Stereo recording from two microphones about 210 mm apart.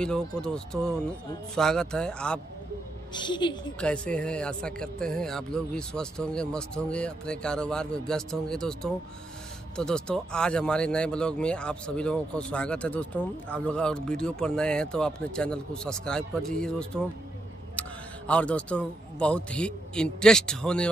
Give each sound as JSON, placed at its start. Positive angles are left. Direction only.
{"t": 0.0, "sound": "speech", "side_deg": 5}
{"t": 3.1, "sound": "a woman's voice", "side_deg": 20}
{"t": 3.8, "sound": "speech", "side_deg": 5}